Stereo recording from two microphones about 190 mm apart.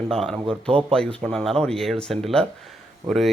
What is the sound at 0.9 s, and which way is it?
Speech, 5° left (ahead or behind).